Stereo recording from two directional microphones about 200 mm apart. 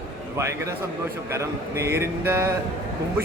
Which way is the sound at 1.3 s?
15° right (ahead or behind).